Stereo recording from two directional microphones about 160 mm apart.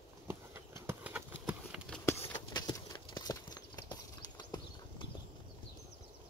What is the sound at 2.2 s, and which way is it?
Clip-clop, 30° left (ahead or behind).